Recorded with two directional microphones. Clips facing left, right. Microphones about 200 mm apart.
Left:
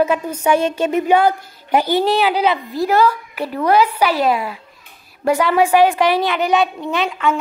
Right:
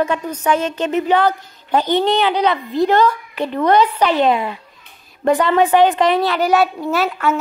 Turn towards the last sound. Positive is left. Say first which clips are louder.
# right 1 dB
turn(degrees=-5)  # may be behind; listen again after turning